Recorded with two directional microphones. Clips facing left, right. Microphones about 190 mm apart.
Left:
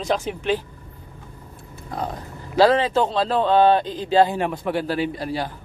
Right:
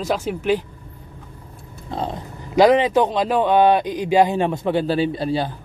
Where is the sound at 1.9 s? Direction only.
25° right (ahead or behind).